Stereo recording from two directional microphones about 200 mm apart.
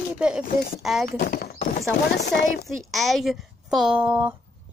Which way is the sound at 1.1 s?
45° left (ahead or behind).